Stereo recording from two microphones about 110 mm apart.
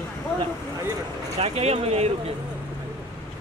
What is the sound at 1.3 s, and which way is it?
Speech, 75° right (ahead or behind).